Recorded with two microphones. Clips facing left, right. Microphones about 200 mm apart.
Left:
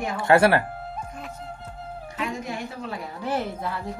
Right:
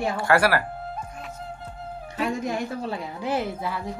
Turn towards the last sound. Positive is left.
turn(degrees=-5)  # may be behind; listen again after turning